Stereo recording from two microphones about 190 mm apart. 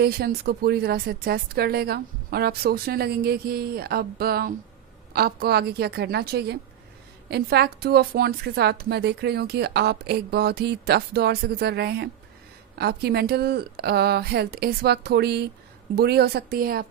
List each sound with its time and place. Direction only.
0.0 s a woman's voice: 55° right (ahead or behind)